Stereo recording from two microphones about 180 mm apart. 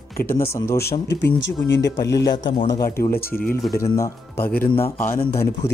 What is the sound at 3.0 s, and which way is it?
Speech, 55° left (ahead or behind).